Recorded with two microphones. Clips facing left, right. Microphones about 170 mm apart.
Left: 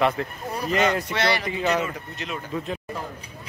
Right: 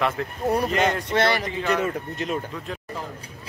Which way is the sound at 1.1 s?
50° right (ahead or behind).